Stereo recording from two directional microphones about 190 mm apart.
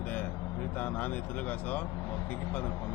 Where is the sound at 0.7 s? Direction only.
10° left (ahead or behind).